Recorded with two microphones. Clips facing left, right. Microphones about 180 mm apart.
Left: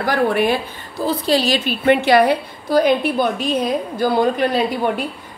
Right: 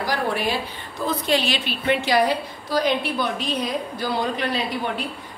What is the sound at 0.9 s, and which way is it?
A woman's voice, 35° left (ahead or behind).